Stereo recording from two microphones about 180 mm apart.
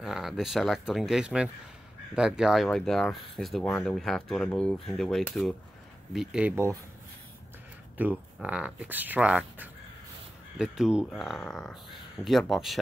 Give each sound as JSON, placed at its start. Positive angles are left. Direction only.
{"t": 0.0, "sound": "speech", "side_deg": 0}
{"t": 8.0, "sound": "speech", "side_deg": -10}